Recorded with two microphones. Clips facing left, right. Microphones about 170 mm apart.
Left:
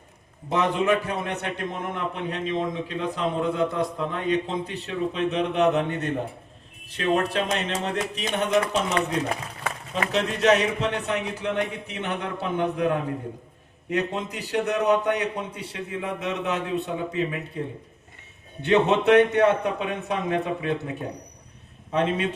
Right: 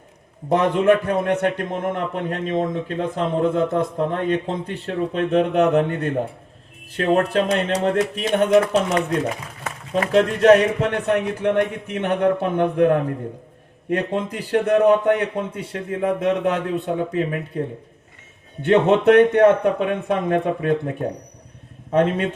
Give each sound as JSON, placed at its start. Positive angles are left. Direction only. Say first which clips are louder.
{"t": 0.4, "sound": "a man's voice", "louder": "right 6 dB", "side_deg": -50}